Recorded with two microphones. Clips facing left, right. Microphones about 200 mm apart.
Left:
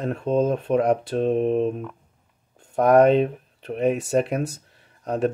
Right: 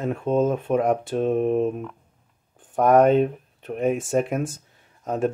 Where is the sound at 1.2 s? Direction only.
45° right (ahead or behind).